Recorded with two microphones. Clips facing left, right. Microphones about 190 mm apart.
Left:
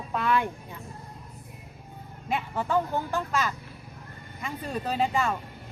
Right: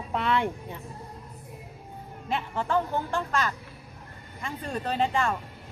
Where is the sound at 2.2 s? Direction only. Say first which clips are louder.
Even; 10° left (ahead or behind).